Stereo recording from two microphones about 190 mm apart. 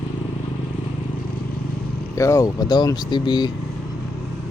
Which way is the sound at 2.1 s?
15° left (ahead or behind).